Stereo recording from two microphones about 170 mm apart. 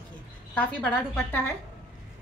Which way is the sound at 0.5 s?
10° left (ahead or behind).